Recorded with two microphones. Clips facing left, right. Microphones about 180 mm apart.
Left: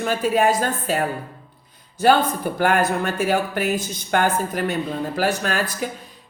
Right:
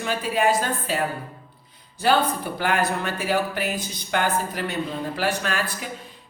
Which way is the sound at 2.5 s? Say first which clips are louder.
Left 5 dB; 50° left (ahead or behind).